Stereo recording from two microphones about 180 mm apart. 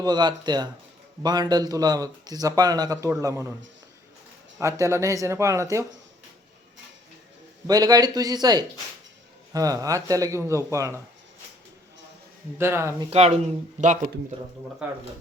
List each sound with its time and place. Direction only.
0.0 s speech: 25° right (ahead or behind)
4.5 s a man's voice: 15° right (ahead or behind)
7.7 s a man's voice: 20° right (ahead or behind)
12.5 s a man's voice: 15° right (ahead or behind)
13.1 s speech: 35° right (ahead or behind)